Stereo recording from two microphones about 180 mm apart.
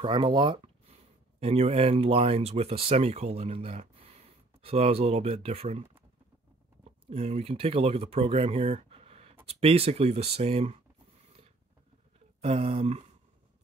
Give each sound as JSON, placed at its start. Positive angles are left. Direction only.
{"t": 0.0, "sound": "speech", "side_deg": -25}
{"t": 7.1, "sound": "speech", "side_deg": -35}
{"t": 12.4, "sound": "speech", "side_deg": -35}